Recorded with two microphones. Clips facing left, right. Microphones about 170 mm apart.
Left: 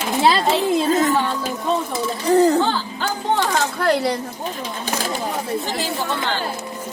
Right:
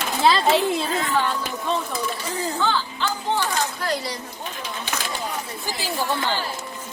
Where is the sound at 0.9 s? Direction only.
45° left (ahead or behind).